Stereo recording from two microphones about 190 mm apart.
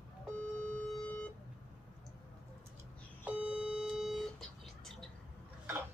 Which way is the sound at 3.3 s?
5° right (ahead or behind).